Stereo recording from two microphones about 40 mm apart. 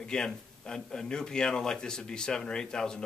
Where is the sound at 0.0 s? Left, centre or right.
Centre.